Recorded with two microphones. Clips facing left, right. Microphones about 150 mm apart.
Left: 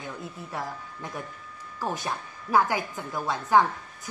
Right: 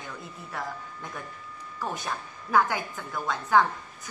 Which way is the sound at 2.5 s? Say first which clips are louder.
Left 1 dB; 15° left (ahead or behind).